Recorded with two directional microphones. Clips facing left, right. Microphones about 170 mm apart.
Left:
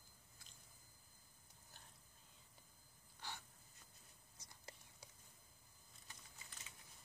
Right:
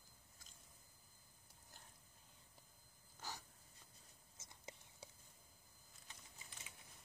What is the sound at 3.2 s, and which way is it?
Wheeze, 45° right (ahead or behind).